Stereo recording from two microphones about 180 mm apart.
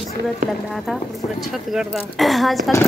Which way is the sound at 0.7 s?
Centre (ahead or behind).